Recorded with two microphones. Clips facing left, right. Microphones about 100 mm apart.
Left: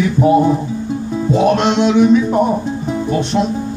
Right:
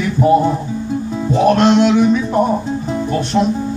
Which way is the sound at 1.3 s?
20° left (ahead or behind).